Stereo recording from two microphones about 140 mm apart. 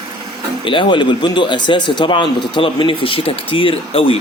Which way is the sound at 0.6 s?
35° left (ahead or behind).